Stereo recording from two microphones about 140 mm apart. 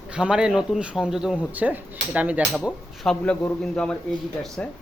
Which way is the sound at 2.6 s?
5° left (ahead or behind).